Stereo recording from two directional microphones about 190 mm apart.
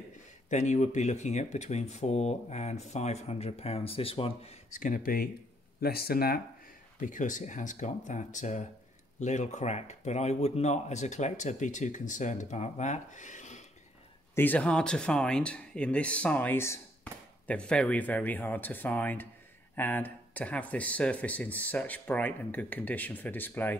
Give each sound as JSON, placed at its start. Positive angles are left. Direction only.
{"t": 0.5, "sound": "speech", "side_deg": 40}
{"t": 7.0, "sound": "speech", "side_deg": 40}
{"t": 14.3, "sound": "speech", "side_deg": 10}